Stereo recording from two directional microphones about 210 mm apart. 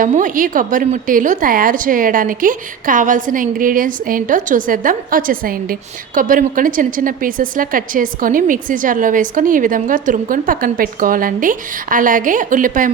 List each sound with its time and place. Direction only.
0.0 s a woman's voice: 40° right (ahead or behind)